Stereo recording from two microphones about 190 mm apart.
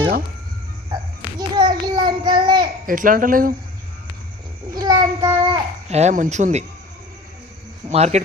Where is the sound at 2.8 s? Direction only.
45° right (ahead or behind).